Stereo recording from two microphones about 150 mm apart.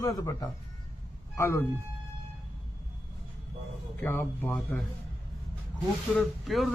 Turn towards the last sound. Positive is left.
turn(degrees=0)  # may be behind; listen again after turning